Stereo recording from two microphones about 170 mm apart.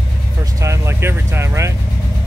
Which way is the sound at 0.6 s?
15° right (ahead or behind).